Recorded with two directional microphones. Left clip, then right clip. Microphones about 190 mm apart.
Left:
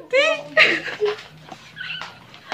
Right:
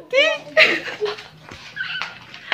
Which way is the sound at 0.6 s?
20° right (ahead or behind).